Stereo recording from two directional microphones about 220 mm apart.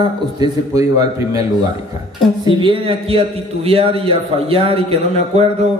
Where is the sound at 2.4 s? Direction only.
25° right (ahead or behind).